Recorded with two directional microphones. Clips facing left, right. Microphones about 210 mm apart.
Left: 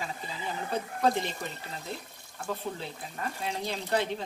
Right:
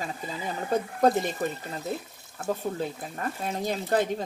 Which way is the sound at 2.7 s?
45° right (ahead or behind).